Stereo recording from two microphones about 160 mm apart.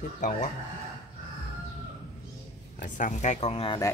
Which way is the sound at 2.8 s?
50° left (ahead or behind).